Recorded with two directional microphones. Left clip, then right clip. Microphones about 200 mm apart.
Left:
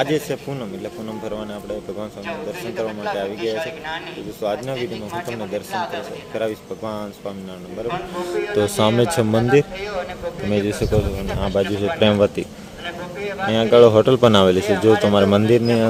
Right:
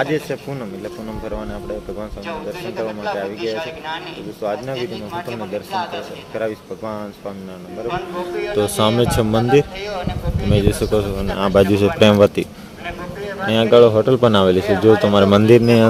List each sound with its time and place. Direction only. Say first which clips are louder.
0.0 s speech: even; 10° left (ahead or behind)
2.8 s speech: right 1 dB; 15° right (ahead or behind)
4.4 s speech: even; 10° left (ahead or behind)
4.8 s speech: right 1 dB; 15° right (ahead or behind)
6.3 s speech: right 1 dB; 10° left (ahead or behind)
8.5 s speech: right 1 dB; 5° left (ahead or behind)
9.8 s speech: even; 20° right (ahead or behind)
10.5 s speech: right 3 dB; centre (ahead or behind)
13.5 s speech: right 1 dB; 5° right (ahead or behind)
14.6 s speech: right 2 dB; 40° left (ahead or behind)
15.0 s speech: right 3 dB; 10° right (ahead or behind)